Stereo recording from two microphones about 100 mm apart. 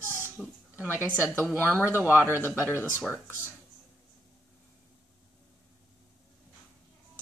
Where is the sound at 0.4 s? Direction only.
Centre (ahead or behind).